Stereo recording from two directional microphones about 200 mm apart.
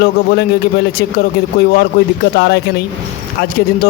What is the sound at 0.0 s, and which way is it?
A man's voice, 55° left (ahead or behind).